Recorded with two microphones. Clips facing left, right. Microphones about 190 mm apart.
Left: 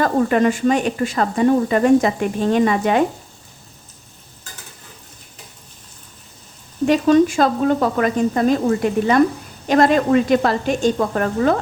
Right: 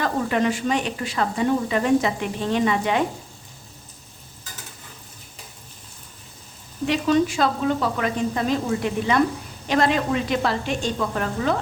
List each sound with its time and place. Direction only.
0.0 s speech: 45° left (ahead or behind)
6.8 s speech: 45° left (ahead or behind)